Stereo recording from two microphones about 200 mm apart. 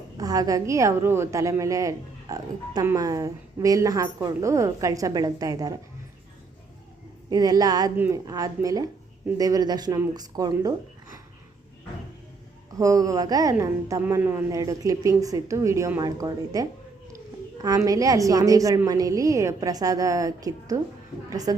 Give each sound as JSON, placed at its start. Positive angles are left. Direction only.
{"t": 0.2, "sound": "a woman's voice", "side_deg": -20}
{"t": 7.3, "sound": "a woman's voice", "side_deg": -20}
{"t": 12.7, "sound": "a woman's voice", "side_deg": -15}